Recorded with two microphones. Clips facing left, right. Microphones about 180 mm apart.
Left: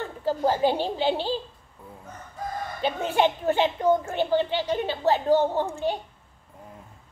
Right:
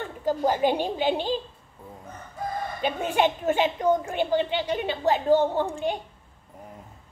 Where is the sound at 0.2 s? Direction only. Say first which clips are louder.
Even; 15° right (ahead or behind).